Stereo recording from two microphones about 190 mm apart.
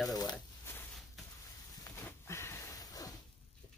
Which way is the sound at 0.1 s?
20° left (ahead or behind).